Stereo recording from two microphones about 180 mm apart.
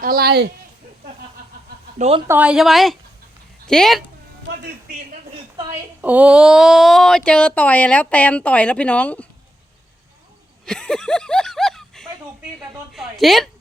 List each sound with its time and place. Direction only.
0.0 s speech: 55° right (ahead or behind)
2.0 s speech: 35° right (ahead or behind)
2.2 s a woman's voice: 10° right (ahead or behind)
6.0 s speech: 10° right (ahead or behind); by 9.2 s 10° left (ahead or behind)
10.7 s a sound: 5° left (ahead or behind)
12.7 s a woman's voice: centre (ahead or behind)